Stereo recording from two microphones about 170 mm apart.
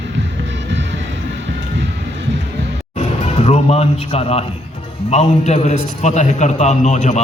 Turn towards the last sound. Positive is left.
turn(degrees=45)  # may be behind; listen again after turning